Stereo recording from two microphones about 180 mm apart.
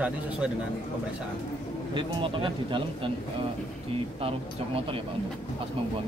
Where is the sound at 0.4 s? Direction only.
5° right (ahead or behind).